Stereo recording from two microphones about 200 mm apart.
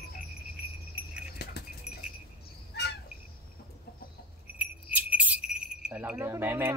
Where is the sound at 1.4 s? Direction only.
55° left (ahead or behind).